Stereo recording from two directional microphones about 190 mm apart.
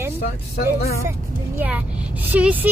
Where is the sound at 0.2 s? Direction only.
55° left (ahead or behind).